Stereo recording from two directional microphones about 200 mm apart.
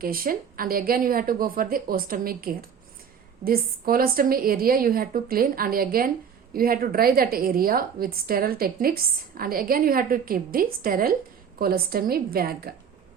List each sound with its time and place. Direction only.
0.0 s a woman's voice: 45° right (ahead or behind)